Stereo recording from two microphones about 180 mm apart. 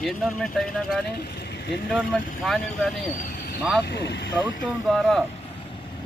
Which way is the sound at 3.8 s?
70° left (ahead or behind).